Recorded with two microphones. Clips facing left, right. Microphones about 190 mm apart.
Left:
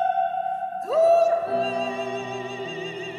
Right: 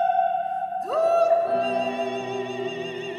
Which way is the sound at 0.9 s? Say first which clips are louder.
Left 2 dB; centre (ahead or behind).